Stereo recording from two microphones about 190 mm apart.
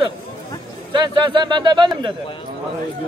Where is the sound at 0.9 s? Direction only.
25° right (ahead or behind).